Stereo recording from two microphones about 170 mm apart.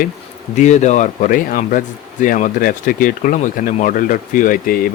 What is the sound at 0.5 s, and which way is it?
Speech, 45° left (ahead or behind).